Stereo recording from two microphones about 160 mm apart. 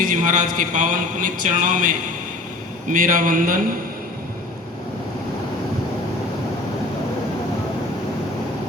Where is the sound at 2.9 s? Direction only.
55° right (ahead or behind).